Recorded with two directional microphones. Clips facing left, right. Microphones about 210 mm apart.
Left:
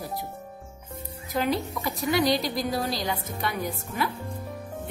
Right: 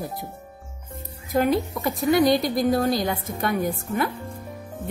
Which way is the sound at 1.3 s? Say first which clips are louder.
Right 5 dB; 50° right (ahead or behind).